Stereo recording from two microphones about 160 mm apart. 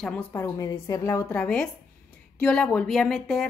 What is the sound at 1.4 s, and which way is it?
A woman's voice, 5° left (ahead or behind).